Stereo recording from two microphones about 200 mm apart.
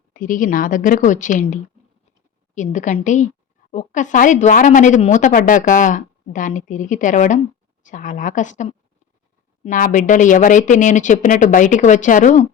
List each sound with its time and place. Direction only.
0.1 s a woman's voice: 40° left (ahead or behind)
2.6 s a woman's voice: 40° left (ahead or behind)